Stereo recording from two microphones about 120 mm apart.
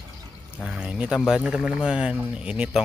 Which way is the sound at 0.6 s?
5° right (ahead or behind).